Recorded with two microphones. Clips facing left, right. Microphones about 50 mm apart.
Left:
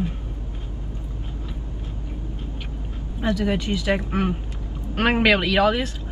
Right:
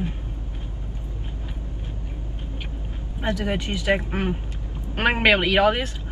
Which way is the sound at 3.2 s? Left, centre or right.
Right.